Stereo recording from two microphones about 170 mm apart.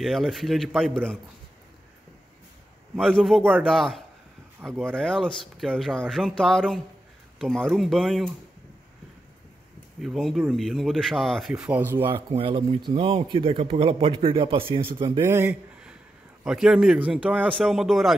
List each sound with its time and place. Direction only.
0.0 s speech: centre (ahead or behind)
3.0 s speech: 5° left (ahead or behind)
4.6 s speech: 10° right (ahead or behind)
4.9 s speech: 5° left (ahead or behind)
9.9 s speech: centre (ahead or behind)
12.3 s speech: 30° right (ahead or behind)
15.2 s a sound: 15° right (ahead or behind)
16.4 s speech: 5° right (ahead or behind)